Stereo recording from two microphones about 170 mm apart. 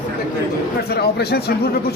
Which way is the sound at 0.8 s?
70° left (ahead or behind).